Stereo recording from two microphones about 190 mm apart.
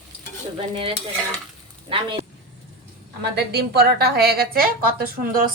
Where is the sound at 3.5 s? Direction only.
55° right (ahead or behind).